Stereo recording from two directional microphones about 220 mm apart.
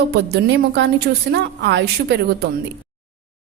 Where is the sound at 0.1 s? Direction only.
50° right (ahead or behind).